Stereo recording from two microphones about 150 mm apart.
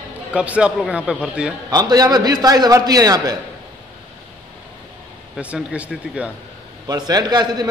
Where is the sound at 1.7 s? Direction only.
25° right (ahead or behind).